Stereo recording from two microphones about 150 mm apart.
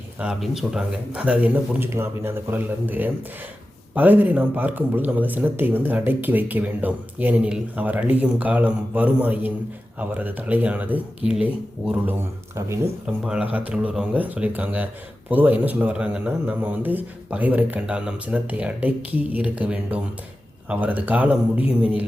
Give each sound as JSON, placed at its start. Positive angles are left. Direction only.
{"t": 0.2, "sound": "speech", "side_deg": -5}
{"t": 12.5, "sound": "speech", "side_deg": -20}
{"t": 13.1, "sound": "speech", "side_deg": -5}